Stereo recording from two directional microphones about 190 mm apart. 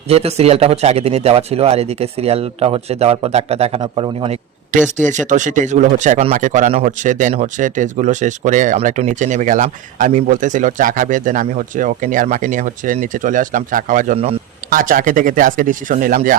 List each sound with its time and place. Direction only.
0.1 s speech: 35° right (ahead or behind)
4.9 s speech: 40° right (ahead or behind)